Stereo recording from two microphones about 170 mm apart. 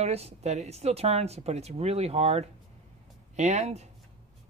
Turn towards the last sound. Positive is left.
turn(degrees=-40)  # may be behind; listen again after turning